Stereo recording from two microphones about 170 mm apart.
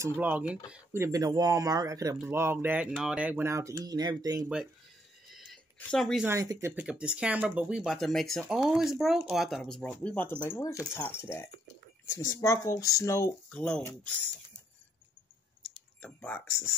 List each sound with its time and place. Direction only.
0.0 s speech: 10° right (ahead or behind)
5.3 s a sound: centre (ahead or behind)
6.2 s speech: 20° right (ahead or behind)
6.7 s speech: 5° right (ahead or behind); by 13.3 s 20° left (ahead or behind)
13.5 s speech: 5° left (ahead or behind)
15.6 s a sound: 5° left (ahead or behind)